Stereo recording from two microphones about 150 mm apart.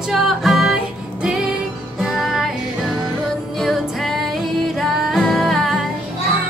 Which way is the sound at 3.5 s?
Centre (ahead or behind).